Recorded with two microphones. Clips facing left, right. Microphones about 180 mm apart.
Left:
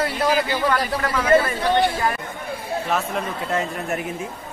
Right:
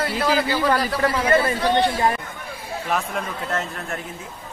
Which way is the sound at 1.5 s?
25° right (ahead or behind).